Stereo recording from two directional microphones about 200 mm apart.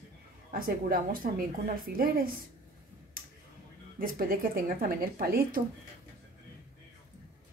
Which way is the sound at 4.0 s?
45° right (ahead or behind).